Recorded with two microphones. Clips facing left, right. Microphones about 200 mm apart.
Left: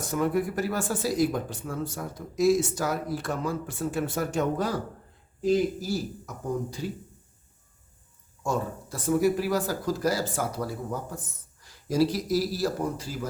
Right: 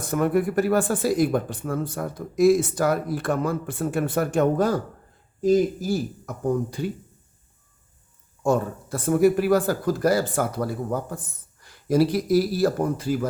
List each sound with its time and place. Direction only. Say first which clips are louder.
0.0 s speech: right 4 dB; 55° right (ahead or behind)
8.4 s speech: right 7 dB; 55° right (ahead or behind)